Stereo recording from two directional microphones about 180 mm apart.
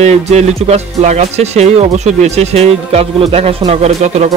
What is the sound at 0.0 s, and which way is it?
Music, 35° right (ahead or behind).